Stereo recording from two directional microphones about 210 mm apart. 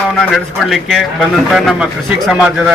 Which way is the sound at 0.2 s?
Centre (ahead or behind).